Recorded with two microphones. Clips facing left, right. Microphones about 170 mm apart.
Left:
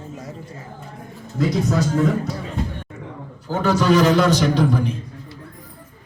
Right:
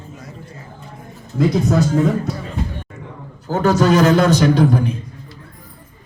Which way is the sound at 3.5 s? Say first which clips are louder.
Right 3 dB; 45° right (ahead or behind).